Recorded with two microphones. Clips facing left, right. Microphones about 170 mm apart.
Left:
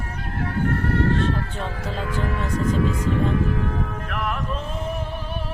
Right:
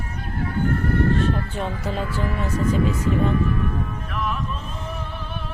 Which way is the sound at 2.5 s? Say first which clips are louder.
Right 1 dB; 65° left (ahead or behind).